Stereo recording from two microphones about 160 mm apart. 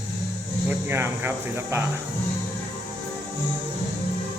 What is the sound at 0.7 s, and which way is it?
Speech, 15° right (ahead or behind).